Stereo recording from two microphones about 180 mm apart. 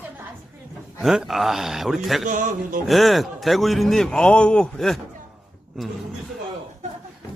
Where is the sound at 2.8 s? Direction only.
Centre (ahead or behind).